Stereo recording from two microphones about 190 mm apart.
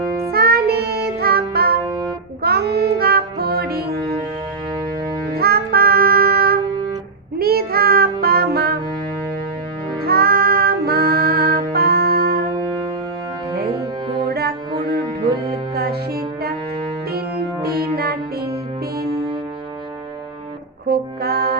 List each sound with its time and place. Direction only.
0.3 s music: 55° right (ahead or behind)
5.3 s music: 55° right (ahead or behind)
10.0 s music: 55° right (ahead or behind)
14.3 s music: 55° right (ahead or behind)
15.7 s music: 55° right (ahead or behind)
20.8 s music: 55° right (ahead or behind)